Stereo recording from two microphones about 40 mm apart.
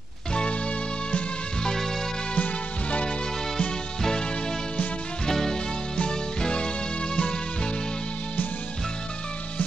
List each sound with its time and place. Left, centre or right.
0.3 s music: left
2.3 s music: left
3.5 s music: centre
5.2 s music: centre